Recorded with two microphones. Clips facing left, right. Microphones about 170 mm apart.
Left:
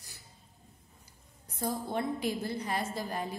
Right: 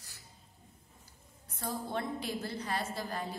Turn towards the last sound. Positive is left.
turn(degrees=15)  # may be behind; listen again after turning